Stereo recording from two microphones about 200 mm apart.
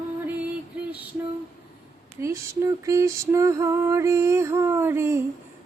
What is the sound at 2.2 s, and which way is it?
Female singing, 15° right (ahead or behind).